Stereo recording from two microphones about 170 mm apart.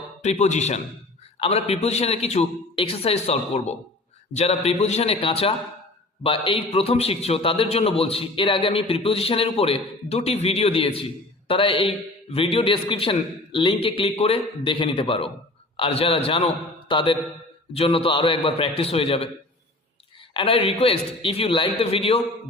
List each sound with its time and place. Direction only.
0.2 s a man's voice: 40° left (ahead or behind)
20.3 s a man's voice: 30° left (ahead or behind)